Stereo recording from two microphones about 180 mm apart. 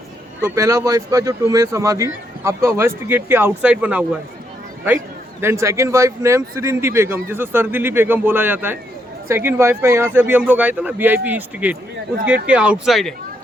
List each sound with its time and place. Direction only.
0.4 s a man's voice: 15° right (ahead or behind); by 13.1 s centre (ahead or behind)